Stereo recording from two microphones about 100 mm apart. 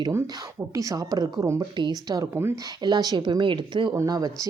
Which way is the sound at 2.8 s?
45° right (ahead or behind).